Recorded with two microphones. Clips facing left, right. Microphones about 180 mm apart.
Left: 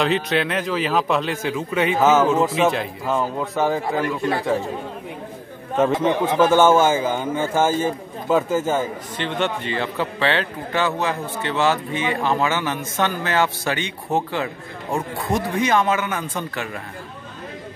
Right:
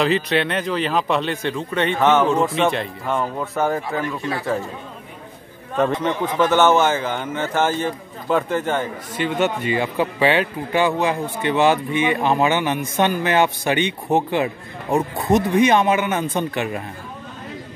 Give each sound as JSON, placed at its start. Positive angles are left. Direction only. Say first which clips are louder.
{"t": 0.0, "sound": "speech", "louder": "right 1 dB", "side_deg": 0}
{"t": 6.4, "sound": "a man's voice", "louder": "left 1 dB", "side_deg": 10}
{"t": 9.1, "sound": "speech", "louder": "right 5 dB", "side_deg": -10}